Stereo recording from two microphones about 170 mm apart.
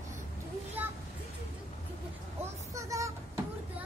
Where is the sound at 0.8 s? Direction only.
10° right (ahead or behind).